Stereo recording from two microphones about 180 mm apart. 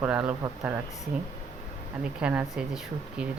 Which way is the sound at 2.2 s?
5° right (ahead or behind).